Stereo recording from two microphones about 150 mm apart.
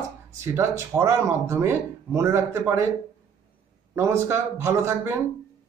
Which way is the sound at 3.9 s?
15° right (ahead or behind).